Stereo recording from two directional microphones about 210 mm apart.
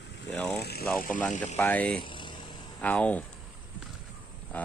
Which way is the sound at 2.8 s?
5° left (ahead or behind).